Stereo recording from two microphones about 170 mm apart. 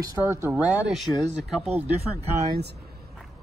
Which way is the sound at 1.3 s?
35° right (ahead or behind).